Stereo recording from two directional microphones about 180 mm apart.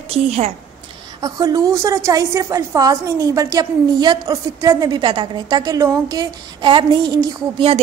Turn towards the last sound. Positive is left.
turn(degrees=-30)  # may be behind; listen again after turning